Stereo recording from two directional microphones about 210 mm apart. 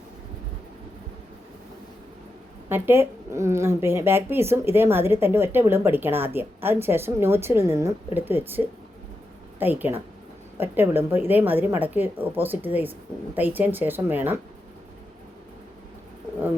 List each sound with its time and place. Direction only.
2.6 s speech: 10° right (ahead or behind)